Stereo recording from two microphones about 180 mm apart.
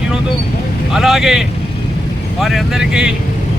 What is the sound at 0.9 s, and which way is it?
Speech, centre (ahead or behind).